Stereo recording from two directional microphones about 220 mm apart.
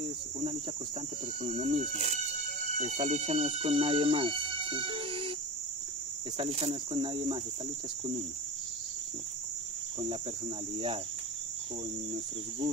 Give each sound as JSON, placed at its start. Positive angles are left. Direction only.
{"t": 0.0, "sound": "cricket", "side_deg": -25}
{"t": 1.4, "sound": "speech", "side_deg": -30}
{"t": 6.3, "sound": "cricket", "side_deg": -25}